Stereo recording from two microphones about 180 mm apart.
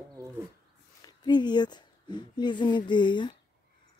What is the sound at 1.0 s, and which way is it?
A woman's voice, 25° left (ahead or behind).